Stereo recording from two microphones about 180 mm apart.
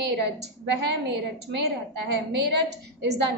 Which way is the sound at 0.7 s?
70° right (ahead or behind).